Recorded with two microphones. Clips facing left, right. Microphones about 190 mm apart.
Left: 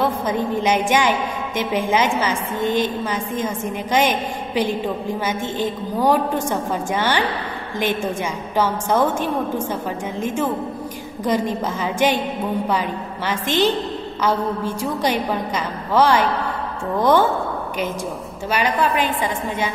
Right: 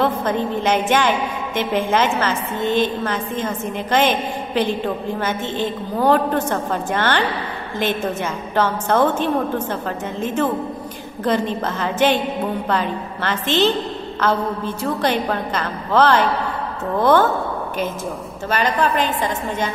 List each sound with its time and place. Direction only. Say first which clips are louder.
0.0 s a woman's voice: right 1 dB; 10° left (ahead or behind)
18.5 s a woman's voice: right 1 dB; 10° left (ahead or behind)